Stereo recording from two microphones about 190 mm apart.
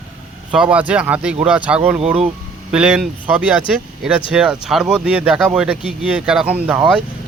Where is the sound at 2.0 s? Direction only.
30° right (ahead or behind).